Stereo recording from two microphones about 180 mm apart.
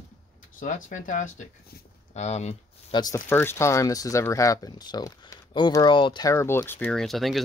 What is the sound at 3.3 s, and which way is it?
Speech, 10° left (ahead or behind).